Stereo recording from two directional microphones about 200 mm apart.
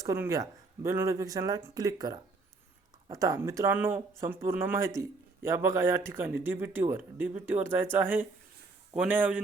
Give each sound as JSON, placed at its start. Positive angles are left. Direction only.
{"t": 0.0, "sound": "speech", "side_deg": -15}